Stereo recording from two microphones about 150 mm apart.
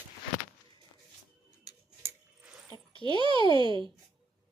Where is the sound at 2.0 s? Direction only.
10° right (ahead or behind).